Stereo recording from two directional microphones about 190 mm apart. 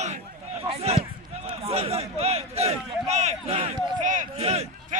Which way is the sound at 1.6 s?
35° right (ahead or behind).